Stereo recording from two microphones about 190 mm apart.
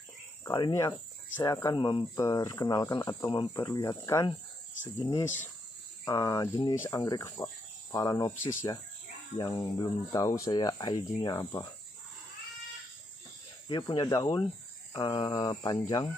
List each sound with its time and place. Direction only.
0.5 s speech: 25° left (ahead or behind)
6.0 s cricket: 15° left (ahead or behind)
6.8 s speech: 20° left (ahead or behind)
9.4 s speech: 20° left (ahead or behind)
13.7 s speech: 25° left (ahead or behind)